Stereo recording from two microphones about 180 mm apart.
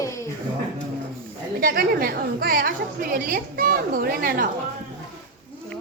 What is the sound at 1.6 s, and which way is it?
A woman's voice, 55° right (ahead or behind).